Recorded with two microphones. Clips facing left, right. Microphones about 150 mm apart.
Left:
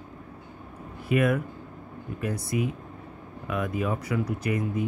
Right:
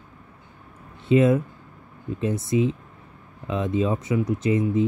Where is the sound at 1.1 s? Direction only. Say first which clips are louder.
Right 6 dB; 25° right (ahead or behind).